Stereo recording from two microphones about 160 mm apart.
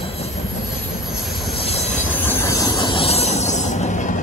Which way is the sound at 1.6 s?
40° left (ahead or behind).